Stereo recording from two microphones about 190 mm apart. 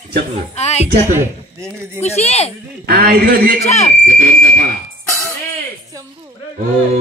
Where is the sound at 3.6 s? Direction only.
35° left (ahead or behind).